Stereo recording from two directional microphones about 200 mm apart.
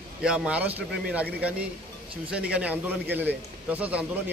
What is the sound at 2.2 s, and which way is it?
A man's voice, 5° right (ahead or behind).